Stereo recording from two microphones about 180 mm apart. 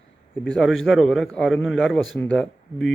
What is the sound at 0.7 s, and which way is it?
Speech, 90° left.